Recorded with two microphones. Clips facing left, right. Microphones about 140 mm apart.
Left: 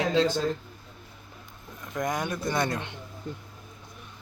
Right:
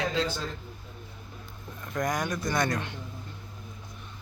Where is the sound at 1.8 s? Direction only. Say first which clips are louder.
Even; 20° left (ahead or behind).